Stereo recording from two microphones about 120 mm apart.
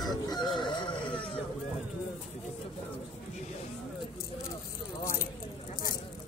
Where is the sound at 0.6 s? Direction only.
40° left (ahead or behind).